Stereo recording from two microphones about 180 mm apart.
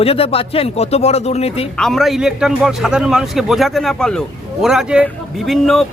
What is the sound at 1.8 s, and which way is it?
Speech, centre (ahead or behind).